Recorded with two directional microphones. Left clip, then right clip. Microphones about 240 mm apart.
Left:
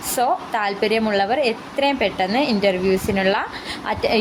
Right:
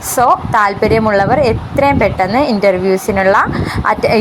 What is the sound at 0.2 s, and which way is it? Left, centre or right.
A woman's voice, centre.